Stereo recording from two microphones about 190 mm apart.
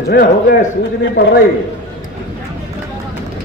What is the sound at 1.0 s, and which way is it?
Speech, 65° left (ahead or behind).